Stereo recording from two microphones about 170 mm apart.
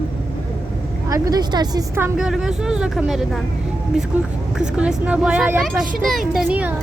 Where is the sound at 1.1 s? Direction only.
20° right (ahead or behind).